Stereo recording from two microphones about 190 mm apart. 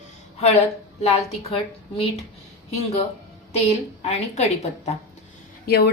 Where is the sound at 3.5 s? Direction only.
35° left (ahead or behind).